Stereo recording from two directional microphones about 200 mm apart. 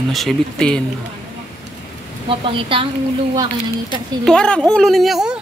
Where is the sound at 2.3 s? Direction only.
25° right (ahead or behind).